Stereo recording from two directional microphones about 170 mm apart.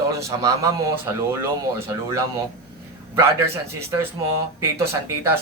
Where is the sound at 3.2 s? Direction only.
15° right (ahead or behind).